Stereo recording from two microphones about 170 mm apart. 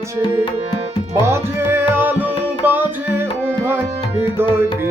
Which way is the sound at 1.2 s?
15° right (ahead or behind).